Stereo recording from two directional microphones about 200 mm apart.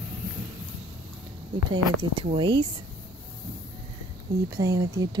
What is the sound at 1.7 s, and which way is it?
Speech, 25° right (ahead or behind).